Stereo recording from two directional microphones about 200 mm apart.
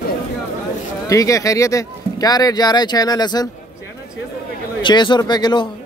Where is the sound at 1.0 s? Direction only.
15° left (ahead or behind).